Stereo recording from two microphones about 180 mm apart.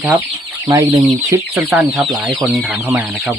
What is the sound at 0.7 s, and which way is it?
Speech, 15° right (ahead or behind).